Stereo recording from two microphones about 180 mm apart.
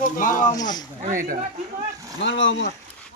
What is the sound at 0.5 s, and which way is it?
Speech, 20° left (ahead or behind).